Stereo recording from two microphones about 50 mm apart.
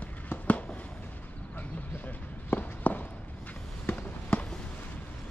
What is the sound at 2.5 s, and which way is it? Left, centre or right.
Walk, left.